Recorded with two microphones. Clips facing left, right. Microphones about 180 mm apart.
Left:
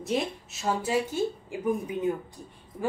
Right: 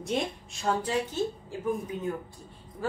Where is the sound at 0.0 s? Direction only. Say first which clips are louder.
Left 2 dB; centre (ahead or behind).